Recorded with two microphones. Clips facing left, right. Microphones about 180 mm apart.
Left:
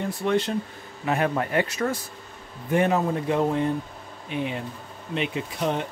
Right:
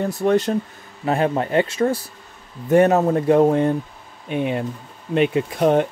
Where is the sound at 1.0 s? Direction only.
30° right (ahead or behind).